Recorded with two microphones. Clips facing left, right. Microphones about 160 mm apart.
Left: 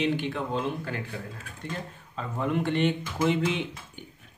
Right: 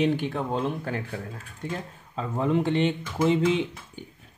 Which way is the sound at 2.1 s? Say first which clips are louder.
Right 4 dB; 30° right (ahead or behind).